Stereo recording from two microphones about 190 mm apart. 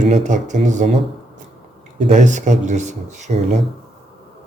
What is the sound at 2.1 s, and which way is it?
Speech, 40° right (ahead or behind).